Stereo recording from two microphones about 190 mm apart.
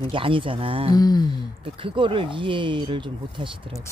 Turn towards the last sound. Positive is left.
turn(degrees=-25)  # may be behind; listen again after turning